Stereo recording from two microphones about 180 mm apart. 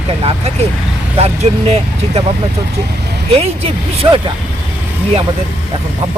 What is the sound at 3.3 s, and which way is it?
A man's voice, 35° right (ahead or behind).